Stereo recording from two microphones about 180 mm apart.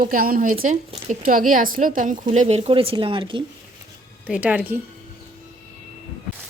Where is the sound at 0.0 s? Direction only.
50° right (ahead or behind).